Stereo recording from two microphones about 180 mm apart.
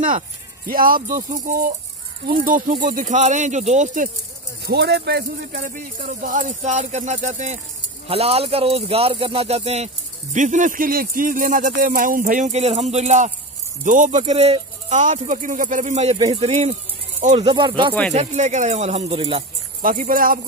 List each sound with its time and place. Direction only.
0.7 s speech: 55° right (ahead or behind)
4.6 s speech: 65° right (ahead or behind)
5.5 s speech: 50° right (ahead or behind)
17.5 s speech: 25° right (ahead or behind)
18.1 s speech: 40° right (ahead or behind)
19.8 s speech: 50° right (ahead or behind)